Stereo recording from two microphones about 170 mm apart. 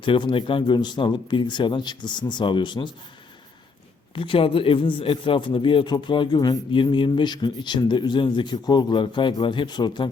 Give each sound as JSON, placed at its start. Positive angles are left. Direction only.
{"t": 0.0, "sound": "a man's voice", "side_deg": 30}
{"t": 4.1, "sound": "a man's voice", "side_deg": 30}